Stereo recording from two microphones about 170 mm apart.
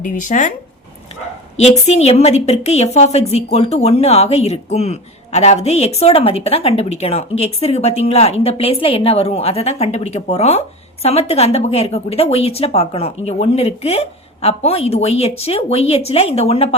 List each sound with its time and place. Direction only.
0.0 s speech: 50° left (ahead or behind)
1.5 s a woman's voice: 40° left (ahead or behind)